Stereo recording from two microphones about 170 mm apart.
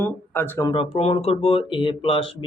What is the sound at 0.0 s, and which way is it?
Speech, 15° left (ahead or behind).